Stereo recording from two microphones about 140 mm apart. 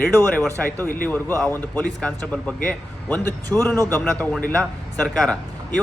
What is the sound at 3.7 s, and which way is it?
Speech, 25° right (ahead or behind).